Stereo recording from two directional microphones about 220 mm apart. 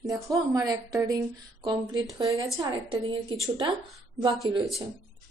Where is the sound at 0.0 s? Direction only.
15° right (ahead or behind).